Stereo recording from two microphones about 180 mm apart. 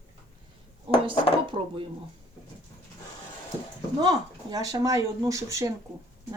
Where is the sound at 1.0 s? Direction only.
30° right (ahead or behind).